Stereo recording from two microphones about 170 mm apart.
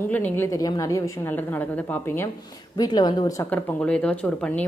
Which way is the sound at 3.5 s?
10° left (ahead or behind).